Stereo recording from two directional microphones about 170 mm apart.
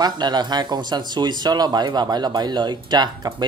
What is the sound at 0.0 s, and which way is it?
Speech, 25° right (ahead or behind).